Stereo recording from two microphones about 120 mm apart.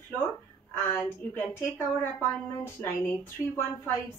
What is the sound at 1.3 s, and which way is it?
A woman's voice, 20° left (ahead or behind).